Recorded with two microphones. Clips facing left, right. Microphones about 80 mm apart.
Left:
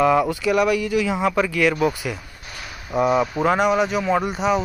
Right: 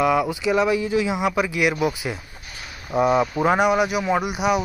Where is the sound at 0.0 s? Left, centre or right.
Centre.